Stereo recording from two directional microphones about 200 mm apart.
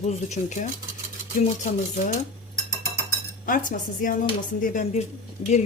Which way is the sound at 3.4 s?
40° left (ahead or behind).